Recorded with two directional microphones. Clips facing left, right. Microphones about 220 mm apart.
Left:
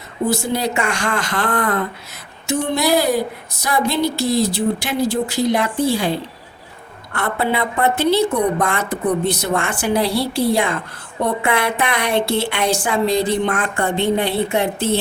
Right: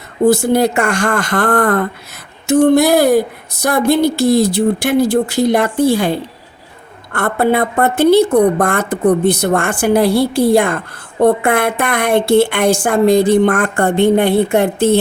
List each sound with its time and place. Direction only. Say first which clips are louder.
0.5 s a woman's voice: right 7 dB; 50° right (ahead or behind)
7.1 s a woman's voice: right 6 dB; 50° right (ahead or behind)